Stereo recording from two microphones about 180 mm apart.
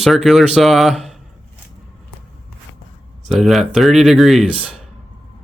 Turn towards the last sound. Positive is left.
turn(degrees=0)  # may be behind; listen again after turning